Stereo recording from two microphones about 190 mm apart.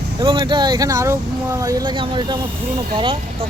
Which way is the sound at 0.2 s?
25° right (ahead or behind).